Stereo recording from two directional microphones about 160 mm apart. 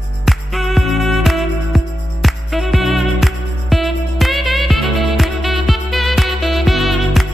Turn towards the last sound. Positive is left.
turn(degrees=0)  # may be behind; listen again after turning